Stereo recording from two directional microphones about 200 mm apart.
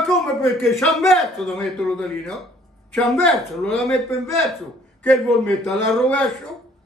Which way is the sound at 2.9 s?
5° left (ahead or behind).